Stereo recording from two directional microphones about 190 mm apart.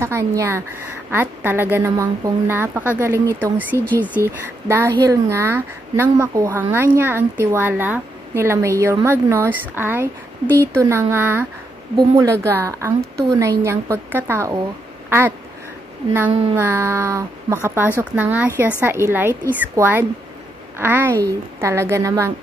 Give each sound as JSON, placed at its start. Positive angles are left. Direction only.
{"t": 0.0, "sound": "a woman's voice", "side_deg": -15}
{"t": 3.7, "sound": "speech", "side_deg": 10}
{"t": 4.0, "sound": "a woman's voice", "side_deg": -10}
{"t": 16.3, "sound": "music", "side_deg": -30}
{"t": 16.5, "sound": "a woman's voice", "side_deg": -10}